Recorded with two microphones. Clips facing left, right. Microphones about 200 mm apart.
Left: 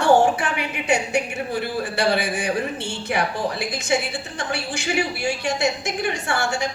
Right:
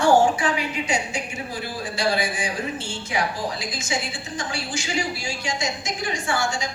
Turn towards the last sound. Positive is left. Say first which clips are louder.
# left 1 dB
turn(degrees=65)  # may be behind; listen again after turning